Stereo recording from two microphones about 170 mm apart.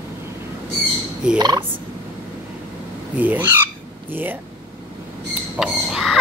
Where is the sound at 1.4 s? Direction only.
25° right (ahead or behind).